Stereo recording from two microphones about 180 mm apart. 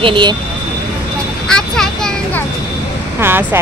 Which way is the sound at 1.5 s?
5° left (ahead or behind).